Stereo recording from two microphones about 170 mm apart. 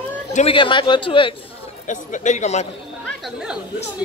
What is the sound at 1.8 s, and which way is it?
Speech, 45° left (ahead or behind).